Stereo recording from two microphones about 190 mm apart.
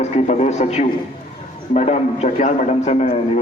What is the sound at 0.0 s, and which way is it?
Speech, 35° left (ahead or behind).